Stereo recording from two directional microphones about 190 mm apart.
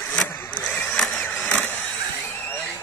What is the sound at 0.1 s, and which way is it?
Vehicle, 15° left (ahead or behind).